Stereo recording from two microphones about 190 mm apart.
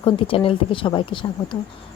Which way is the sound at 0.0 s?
30° left (ahead or behind).